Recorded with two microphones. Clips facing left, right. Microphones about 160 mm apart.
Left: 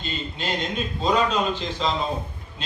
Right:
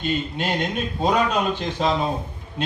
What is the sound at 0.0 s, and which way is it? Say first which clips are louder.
Speech: right 6 dB; 55° right (ahead or behind).